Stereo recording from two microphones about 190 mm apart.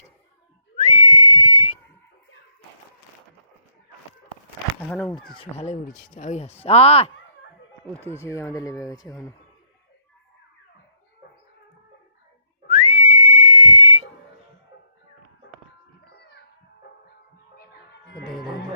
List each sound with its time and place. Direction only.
0.8 s whistling: 35° left (ahead or behind)
4.8 s speech: 5° left (ahead or behind)
5.3 s speech: 30° left (ahead or behind)
8.1 s speech: 15° left (ahead or behind)
12.6 s whistling: 40° left (ahead or behind)
16.0 s music: 60° left (ahead or behind)
17.6 s music: 60° left (ahead or behind)